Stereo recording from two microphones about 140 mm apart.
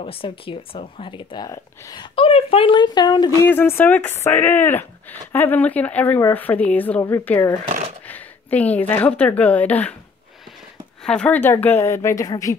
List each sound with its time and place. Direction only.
0.0 s speech: 40° left (ahead or behind)
2.1 s speech: 40° left (ahead or behind)
3.4 s speech: 15° left (ahead or behind)
7.6 s shuffling cards: 60° right (ahead or behind)
8.1 s a woman's voice: 10° left (ahead or behind)
11.1 s speech: 10° left (ahead or behind); by 12.5 s 25° left (ahead or behind)